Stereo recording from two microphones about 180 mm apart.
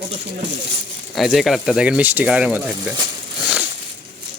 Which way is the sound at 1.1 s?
Centre (ahead or behind).